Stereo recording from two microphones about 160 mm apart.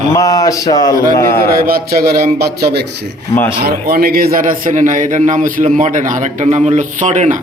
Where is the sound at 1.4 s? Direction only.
70° right (ahead or behind).